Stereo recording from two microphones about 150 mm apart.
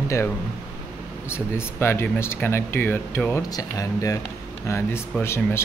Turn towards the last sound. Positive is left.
turn(degrees=15)  # may be behind; listen again after turning